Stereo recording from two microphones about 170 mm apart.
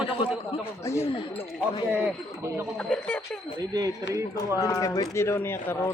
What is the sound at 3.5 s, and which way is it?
Speech, 20° right (ahead or behind).